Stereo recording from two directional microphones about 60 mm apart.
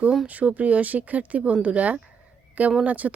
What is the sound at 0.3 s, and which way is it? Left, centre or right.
Speech, right.